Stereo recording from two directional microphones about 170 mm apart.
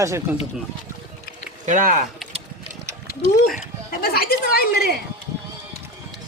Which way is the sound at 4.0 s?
65° left (ahead or behind).